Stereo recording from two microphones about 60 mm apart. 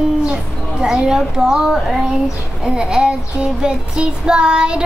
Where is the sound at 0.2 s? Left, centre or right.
Centre.